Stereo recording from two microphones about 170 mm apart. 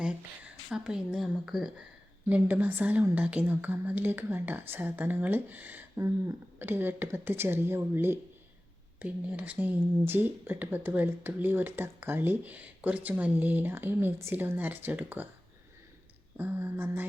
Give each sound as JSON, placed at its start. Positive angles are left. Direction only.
{"t": 0.0, "sound": "speech", "side_deg": -5}
{"t": 16.4, "sound": "speech", "side_deg": -10}